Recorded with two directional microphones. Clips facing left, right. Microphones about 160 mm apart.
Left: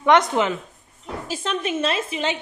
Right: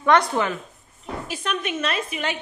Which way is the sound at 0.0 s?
20° left (ahead or behind).